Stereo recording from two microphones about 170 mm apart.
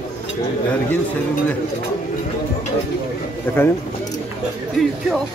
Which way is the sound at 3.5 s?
10° left (ahead or behind).